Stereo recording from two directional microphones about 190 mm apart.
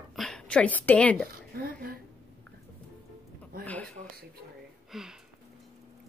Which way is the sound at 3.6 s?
10° left (ahead or behind).